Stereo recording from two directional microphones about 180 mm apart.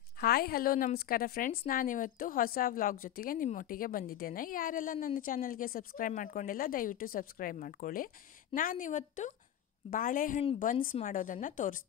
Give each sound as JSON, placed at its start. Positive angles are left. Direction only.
{"t": 0.2, "sound": "a woman's voice", "side_deg": 55}